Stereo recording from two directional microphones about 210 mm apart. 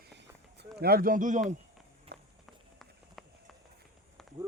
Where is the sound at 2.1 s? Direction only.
50° right (ahead or behind).